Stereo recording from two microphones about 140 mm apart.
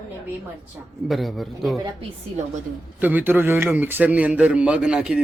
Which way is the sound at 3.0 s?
10° right (ahead or behind).